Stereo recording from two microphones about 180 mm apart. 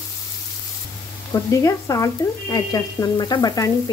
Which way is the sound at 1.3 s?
20° left (ahead or behind).